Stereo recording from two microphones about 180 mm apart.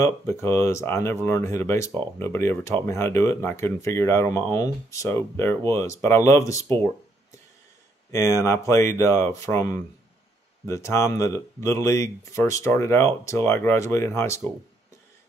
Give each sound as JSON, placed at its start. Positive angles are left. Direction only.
{"t": 0.0, "sound": "speech", "side_deg": 15}
{"t": 8.1, "sound": "speech", "side_deg": 15}